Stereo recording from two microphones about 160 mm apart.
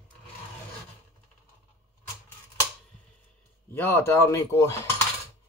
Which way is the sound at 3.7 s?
15° left (ahead or behind).